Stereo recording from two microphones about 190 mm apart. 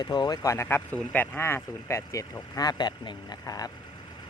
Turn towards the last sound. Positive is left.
turn(degrees=20)  # may be behind; listen again after turning